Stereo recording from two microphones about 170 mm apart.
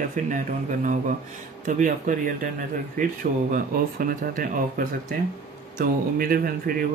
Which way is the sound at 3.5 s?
55° right (ahead or behind).